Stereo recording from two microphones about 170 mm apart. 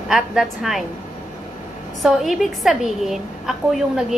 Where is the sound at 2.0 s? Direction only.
Centre (ahead or behind).